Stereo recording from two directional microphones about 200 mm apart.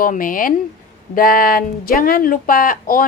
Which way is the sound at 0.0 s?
45° left (ahead or behind).